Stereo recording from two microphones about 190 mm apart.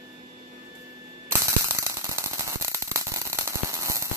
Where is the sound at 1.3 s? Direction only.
15° right (ahead or behind).